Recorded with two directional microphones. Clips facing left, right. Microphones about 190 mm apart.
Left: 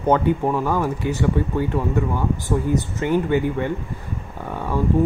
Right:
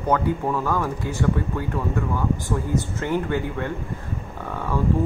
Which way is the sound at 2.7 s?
15° left (ahead or behind).